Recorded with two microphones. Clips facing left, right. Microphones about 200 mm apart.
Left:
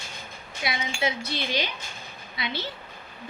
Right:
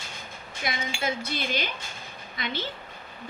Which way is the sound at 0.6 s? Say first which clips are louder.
Left 2 dB; 50° right (ahead or behind).